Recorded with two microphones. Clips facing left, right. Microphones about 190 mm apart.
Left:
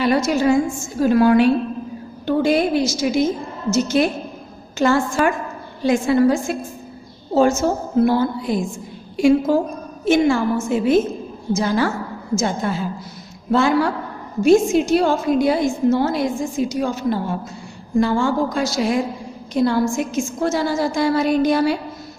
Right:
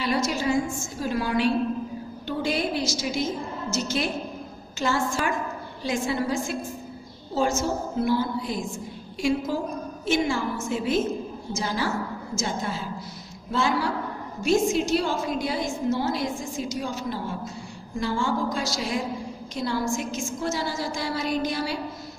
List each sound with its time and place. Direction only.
0.0 s a woman's voice: 60° left (ahead or behind)